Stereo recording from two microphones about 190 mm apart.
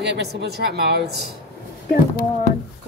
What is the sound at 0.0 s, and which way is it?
A woman's voice, 60° right (ahead or behind).